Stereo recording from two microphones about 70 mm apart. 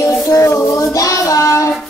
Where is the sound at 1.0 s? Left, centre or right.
Left.